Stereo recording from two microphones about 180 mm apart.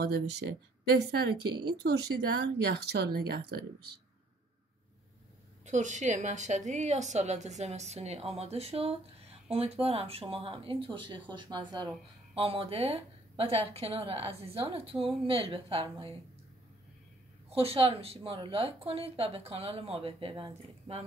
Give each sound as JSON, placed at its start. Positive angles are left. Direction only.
{"t": 0.0, "sound": "speech", "side_deg": -65}
{"t": 1.4, "sound": "speech", "side_deg": -25}
{"t": 1.7, "sound": "speech", "side_deg": -65}
{"t": 5.7, "sound": "a woman's voice", "side_deg": -40}
{"t": 17.5, "sound": "a woman's voice", "side_deg": -35}